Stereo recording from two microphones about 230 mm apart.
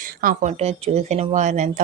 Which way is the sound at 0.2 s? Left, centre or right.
Right.